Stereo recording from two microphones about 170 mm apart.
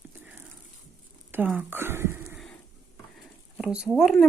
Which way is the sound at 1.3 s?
10° right (ahead or behind).